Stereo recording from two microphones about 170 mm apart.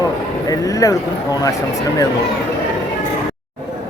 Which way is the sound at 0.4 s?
20° left (ahead or behind).